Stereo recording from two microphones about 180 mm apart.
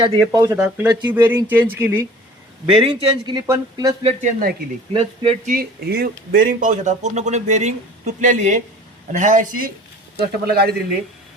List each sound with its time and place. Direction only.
0.3 s speech: 15° right (ahead or behind)
2.6 s speech: 30° right (ahead or behind)
4.0 s speech: 45° right (ahead or behind)
4.9 s speech: 30° right (ahead or behind)
5.5 s speech: 55° right (ahead or behind)
10.2 s speech: 60° right (ahead or behind)